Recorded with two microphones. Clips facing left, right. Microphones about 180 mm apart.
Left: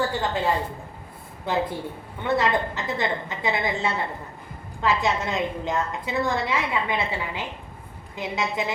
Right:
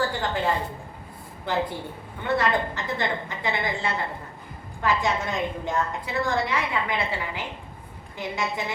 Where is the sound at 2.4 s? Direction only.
20° left (ahead or behind).